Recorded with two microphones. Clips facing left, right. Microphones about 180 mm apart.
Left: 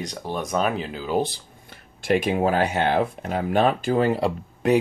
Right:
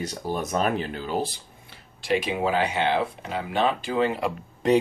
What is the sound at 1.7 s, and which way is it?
Speech, 50° left (ahead or behind).